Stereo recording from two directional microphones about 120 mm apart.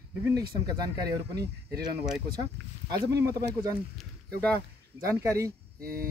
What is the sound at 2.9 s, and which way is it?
Speech, 30° right (ahead or behind).